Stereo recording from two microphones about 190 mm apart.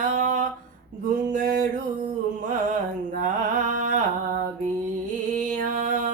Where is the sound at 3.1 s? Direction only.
45° right (ahead or behind).